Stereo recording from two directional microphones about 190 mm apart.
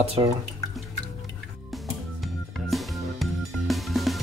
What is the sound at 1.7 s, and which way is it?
Music, centre (ahead or behind).